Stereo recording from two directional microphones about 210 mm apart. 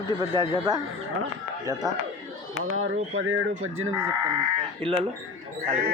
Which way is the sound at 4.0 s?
20° right (ahead or behind).